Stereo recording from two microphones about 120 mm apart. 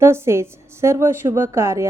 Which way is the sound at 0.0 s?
20° right (ahead or behind).